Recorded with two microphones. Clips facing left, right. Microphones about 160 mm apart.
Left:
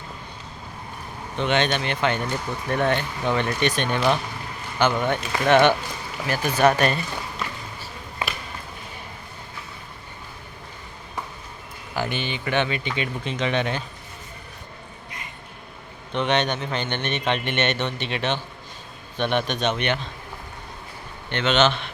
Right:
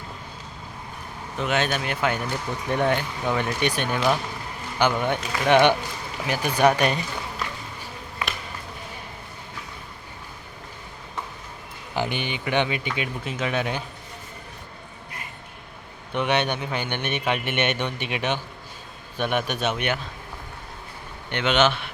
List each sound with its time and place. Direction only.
1.4 s a man's voice: 5° right (ahead or behind)
8.2 s a sound: 25° left (ahead or behind)
11.9 s a man's voice: 15° right (ahead or behind)
16.1 s a man's voice: 10° right (ahead or behind)
21.2 s a man's voice: 10° right (ahead or behind)